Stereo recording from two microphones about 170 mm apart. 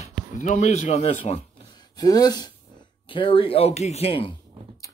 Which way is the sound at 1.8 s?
20° left (ahead or behind).